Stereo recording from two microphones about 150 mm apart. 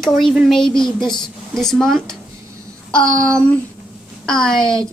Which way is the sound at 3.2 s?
10° left (ahead or behind).